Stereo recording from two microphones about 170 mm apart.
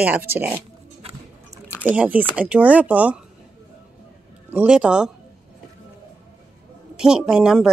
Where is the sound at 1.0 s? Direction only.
35° right (ahead or behind).